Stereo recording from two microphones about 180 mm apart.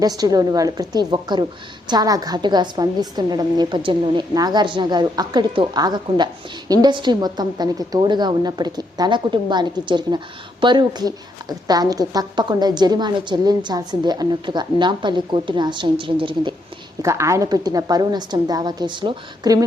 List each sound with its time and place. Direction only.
0.0 s a woman's voice: 20° right (ahead or behind)
17.0 s a woman's voice: 15° right (ahead or behind)